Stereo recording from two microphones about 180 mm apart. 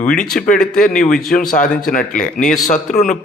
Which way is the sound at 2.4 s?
Centre (ahead or behind).